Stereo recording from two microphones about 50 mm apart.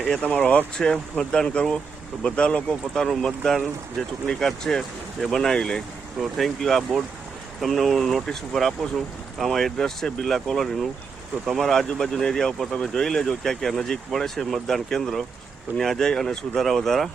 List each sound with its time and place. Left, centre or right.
0.0 s speech: centre
2.6 s speech: centre
6.3 s speech: centre